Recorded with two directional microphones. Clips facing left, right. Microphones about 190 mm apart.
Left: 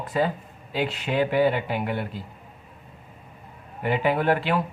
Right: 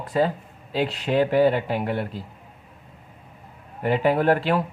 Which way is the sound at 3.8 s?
35° right (ahead or behind).